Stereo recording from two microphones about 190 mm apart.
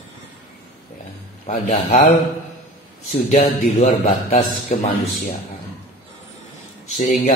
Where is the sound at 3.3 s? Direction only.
35° left (ahead or behind).